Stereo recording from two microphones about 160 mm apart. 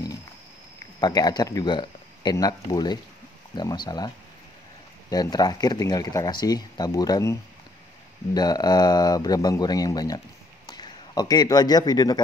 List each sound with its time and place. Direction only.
1.0 s speech: 25° left (ahead or behind)
5.1 s speech: 25° left (ahead or behind)
8.4 s a man's voice: 25° left (ahead or behind)